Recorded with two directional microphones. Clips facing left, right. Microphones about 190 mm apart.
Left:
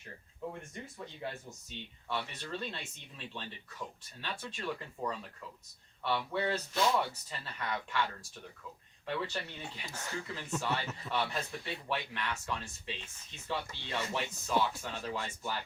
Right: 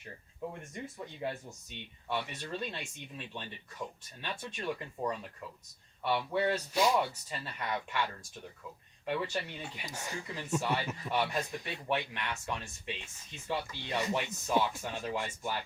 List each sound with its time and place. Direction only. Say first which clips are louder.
0.7 s speech: right 3 dB; 15° right (ahead or behind)
4.2 s speech: right 1 dB; 20° right (ahead or behind)